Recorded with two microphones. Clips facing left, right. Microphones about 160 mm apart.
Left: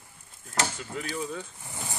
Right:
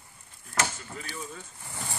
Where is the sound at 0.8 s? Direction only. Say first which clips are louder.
Left 6 dB; 90° left.